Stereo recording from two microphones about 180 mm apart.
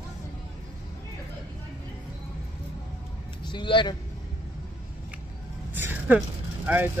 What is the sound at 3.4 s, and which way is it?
Speech, 25° left (ahead or behind).